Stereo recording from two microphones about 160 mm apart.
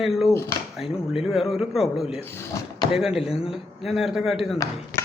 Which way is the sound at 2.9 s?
5° right (ahead or behind).